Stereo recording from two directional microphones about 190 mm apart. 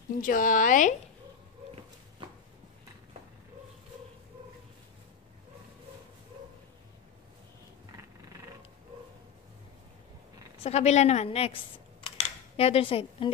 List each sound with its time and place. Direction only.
0.2 s a woman's voice: 45° left (ahead or behind)
10.6 s a woman's voice: 35° left (ahead or behind)